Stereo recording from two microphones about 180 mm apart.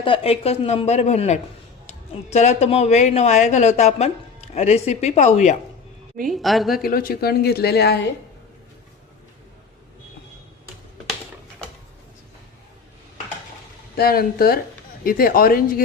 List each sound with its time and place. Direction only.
0.0 s speech: 30° left (ahead or behind)
6.2 s a woman's voice: centre (ahead or behind)
6.8 s speech: 55° left (ahead or behind)
13.9 s speech: 60° left (ahead or behind)